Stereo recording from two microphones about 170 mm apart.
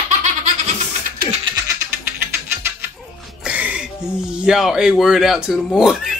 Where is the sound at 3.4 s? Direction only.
10° right (ahead or behind).